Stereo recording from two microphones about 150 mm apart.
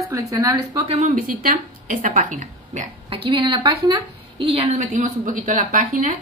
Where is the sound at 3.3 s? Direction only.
30° right (ahead or behind).